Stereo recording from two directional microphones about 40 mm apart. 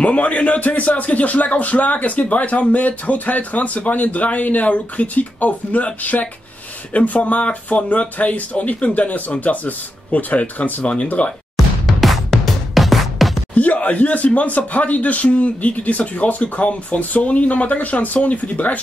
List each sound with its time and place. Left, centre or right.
0.0 s speech: left
11.5 s music: centre
13.6 s speech: left